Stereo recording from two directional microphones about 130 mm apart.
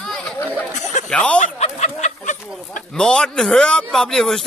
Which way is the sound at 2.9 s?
5° left (ahead or behind).